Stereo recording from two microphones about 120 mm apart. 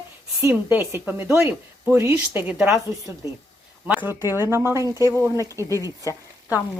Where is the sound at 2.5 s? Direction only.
5° right (ahead or behind).